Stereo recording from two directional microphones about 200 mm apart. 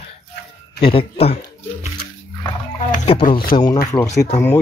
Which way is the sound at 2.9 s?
30° left (ahead or behind).